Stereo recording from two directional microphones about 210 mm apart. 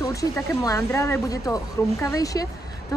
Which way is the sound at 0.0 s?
15° left (ahead or behind).